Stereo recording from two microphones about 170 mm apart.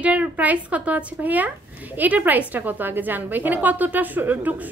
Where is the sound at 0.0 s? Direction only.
10° right (ahead or behind).